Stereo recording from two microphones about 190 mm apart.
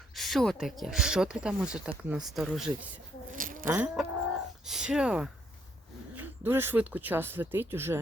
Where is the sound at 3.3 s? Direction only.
45° right (ahead or behind).